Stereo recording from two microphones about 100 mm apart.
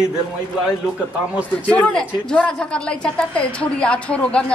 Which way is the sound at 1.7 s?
10° left (ahead or behind).